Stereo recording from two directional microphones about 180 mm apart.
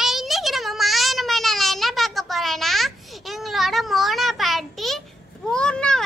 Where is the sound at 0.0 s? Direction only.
Centre (ahead or behind).